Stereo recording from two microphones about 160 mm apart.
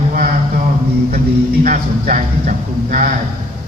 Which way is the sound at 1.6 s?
60° right (ahead or behind).